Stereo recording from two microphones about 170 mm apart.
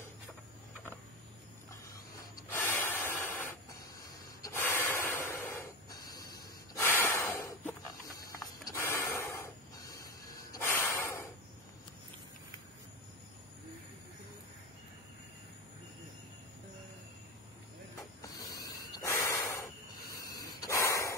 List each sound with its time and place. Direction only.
2.5 s snort: 15° left (ahead or behind)
8.3 s mechanisms: 20° left (ahead or behind)
10.5 s snort: 15° left (ahead or behind)
18.2 s hiss: 20° left (ahead or behind)
18.9 s snort: 20° left (ahead or behind)